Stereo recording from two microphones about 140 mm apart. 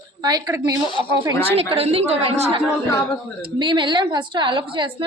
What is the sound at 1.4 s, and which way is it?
A woman's voice, 45° right (ahead or behind).